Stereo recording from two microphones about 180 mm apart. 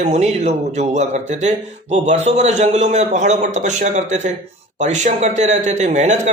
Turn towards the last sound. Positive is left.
turn(degrees=-40)  # may be behind; listen again after turning